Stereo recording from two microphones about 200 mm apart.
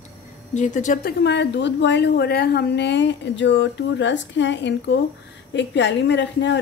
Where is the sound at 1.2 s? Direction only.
60° left (ahead or behind).